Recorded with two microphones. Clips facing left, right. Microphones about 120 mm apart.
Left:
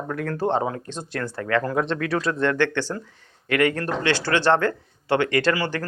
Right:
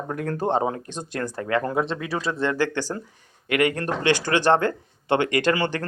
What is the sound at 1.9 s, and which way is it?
Speech, 5° right (ahead or behind).